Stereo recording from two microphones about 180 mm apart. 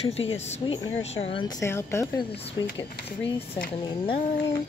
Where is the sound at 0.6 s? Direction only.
25° left (ahead or behind).